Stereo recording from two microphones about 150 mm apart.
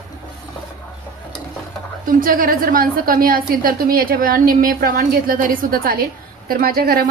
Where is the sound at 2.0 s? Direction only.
65° right (ahead or behind); by 7.1 s 85° right.